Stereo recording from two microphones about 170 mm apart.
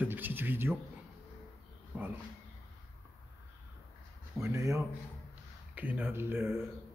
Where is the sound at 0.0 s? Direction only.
10° right (ahead or behind).